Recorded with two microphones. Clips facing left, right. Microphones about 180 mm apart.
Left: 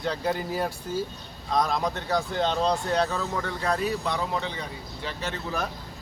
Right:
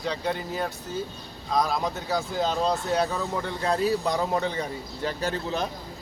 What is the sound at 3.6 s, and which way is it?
Speech, 25° right (ahead or behind).